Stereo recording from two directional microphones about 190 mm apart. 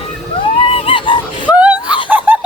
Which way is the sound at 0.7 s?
30° left (ahead or behind).